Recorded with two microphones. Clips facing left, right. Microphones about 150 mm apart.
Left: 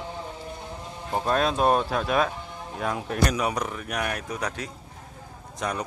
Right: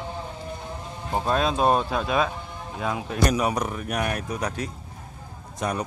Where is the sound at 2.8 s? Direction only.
15° right (ahead or behind).